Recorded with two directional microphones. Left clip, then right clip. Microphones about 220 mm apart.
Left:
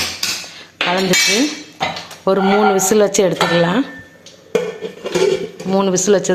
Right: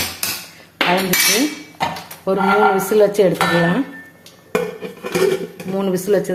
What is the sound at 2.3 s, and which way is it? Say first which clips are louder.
A woman's voice: left 1 dB; 20° left (ahead or behind).